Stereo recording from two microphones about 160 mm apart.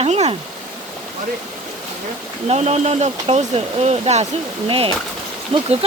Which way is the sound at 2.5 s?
40° right (ahead or behind).